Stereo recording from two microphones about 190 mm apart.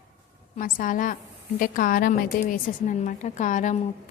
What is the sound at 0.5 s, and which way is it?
A woman's voice, 45° left (ahead or behind).